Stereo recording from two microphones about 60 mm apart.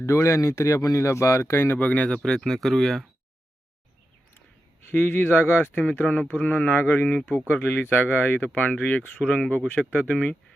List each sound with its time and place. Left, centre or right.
0.0 s speech: left
1.8 s speech: left
2.0 s speech: centre
4.9 s speech: left
9.1 s speech: centre